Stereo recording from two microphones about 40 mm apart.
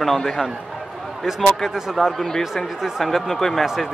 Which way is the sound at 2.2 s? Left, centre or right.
Centre.